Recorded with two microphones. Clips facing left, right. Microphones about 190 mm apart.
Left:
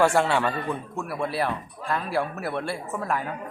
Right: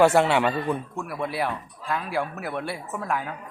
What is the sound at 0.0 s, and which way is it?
Speech, 20° right (ahead or behind).